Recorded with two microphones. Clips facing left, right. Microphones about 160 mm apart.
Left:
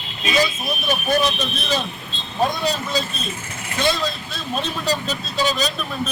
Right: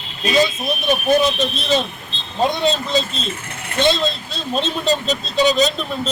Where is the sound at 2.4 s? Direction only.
20° right (ahead or behind).